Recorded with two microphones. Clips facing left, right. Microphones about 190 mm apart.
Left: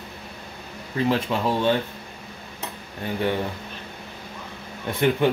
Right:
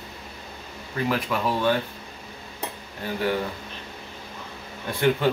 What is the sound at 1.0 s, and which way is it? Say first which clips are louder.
Speech: left 2 dB; 25° left (ahead or behind).